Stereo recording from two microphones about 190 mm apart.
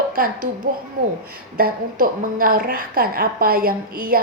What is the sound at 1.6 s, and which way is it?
A woman's voice, 45° right (ahead or behind).